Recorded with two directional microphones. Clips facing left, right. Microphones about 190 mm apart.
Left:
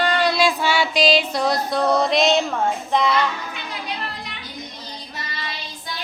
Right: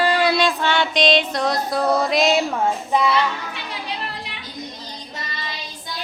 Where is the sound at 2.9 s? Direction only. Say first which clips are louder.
Even; 5° right (ahead or behind).